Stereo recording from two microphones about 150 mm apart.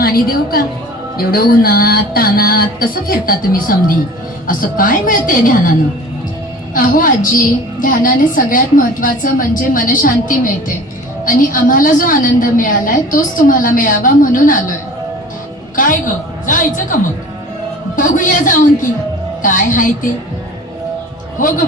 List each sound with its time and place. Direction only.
0.0 s a woman's voice: 85° left; by 5.7 s 65° left (ahead or behind)
6.7 s a woman's voice: 65° left (ahead or behind)
11.5 s a woman's voice: 65° left (ahead or behind)
15.7 s music: 65° left (ahead or behind)
16.5 s a woman's voice: 60° left (ahead or behind)